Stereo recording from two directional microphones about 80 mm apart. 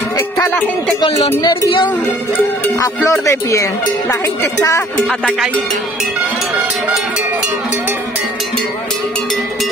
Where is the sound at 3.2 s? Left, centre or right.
Left.